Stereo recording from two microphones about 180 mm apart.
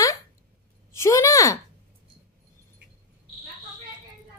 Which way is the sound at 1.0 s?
15° left (ahead or behind).